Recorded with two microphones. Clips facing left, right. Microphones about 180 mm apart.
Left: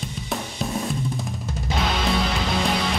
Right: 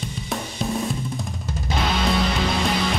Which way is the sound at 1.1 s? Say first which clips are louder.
Even; centre (ahead or behind).